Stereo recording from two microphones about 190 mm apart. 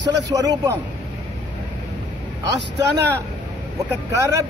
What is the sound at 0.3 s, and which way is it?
Speech, 20° right (ahead or behind).